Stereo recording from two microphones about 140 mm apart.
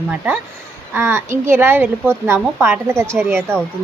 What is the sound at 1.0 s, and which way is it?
A woman's voice, 20° right (ahead or behind).